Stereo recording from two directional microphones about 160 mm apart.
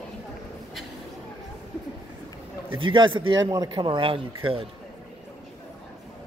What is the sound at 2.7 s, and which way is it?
A man's voice, 30° right (ahead or behind).